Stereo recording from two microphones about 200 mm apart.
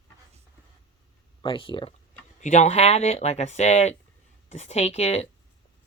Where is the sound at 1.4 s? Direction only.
25° left (ahead or behind).